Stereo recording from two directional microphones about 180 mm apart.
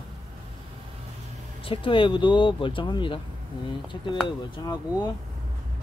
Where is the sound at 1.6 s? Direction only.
30° left (ahead or behind).